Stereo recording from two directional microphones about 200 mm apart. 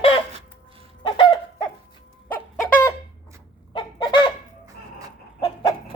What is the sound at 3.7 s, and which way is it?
Chicken, 25° left (ahead or behind).